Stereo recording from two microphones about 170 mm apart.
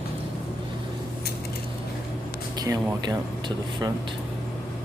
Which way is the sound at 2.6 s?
25° right (ahead or behind).